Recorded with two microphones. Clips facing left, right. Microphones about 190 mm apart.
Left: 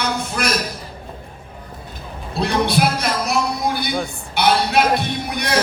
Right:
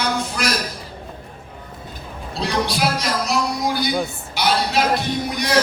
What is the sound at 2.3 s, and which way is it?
A man's voice, 55° left (ahead or behind).